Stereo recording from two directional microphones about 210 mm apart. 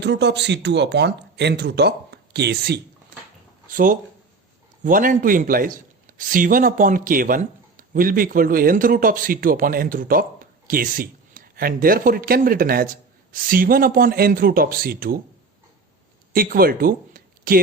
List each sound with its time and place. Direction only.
0.0 s speech: 55° right (ahead or behind)
3.7 s a man's voice: 40° right (ahead or behind)
16.3 s speech: 45° right (ahead or behind)